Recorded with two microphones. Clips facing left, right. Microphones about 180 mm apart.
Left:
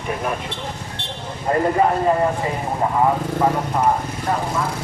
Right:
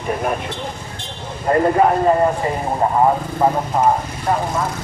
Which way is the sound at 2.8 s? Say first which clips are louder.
Right 3 dB; 40° right (ahead or behind).